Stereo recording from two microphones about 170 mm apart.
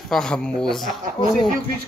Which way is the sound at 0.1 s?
5° left (ahead or behind).